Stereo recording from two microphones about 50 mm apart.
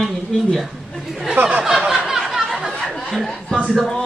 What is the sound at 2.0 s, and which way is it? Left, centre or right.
Chatter, centre.